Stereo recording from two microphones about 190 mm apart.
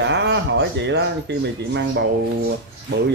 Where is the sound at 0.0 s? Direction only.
70° right (ahead or behind).